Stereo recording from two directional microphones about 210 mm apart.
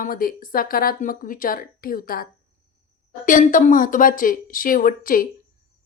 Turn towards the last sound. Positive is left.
turn(degrees=40)  # may be behind; listen again after turning